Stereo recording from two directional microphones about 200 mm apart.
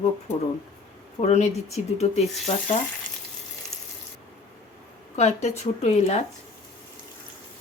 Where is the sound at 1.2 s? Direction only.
35° left (ahead or behind).